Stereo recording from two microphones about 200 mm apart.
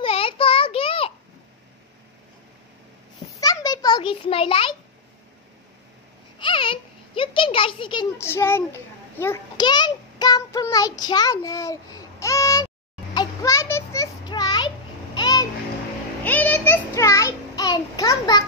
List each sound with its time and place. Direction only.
0.0 s child singing: 25° left (ahead or behind)
3.3 s a sound: 20° left (ahead or behind)
6.4 s a child's voice: 25° left (ahead or behind)
9.2 s child singing: 15° left (ahead or behind)
13.1 s a sound: 20° left (ahead or behind)
16.3 s child singing: 10° left (ahead or behind)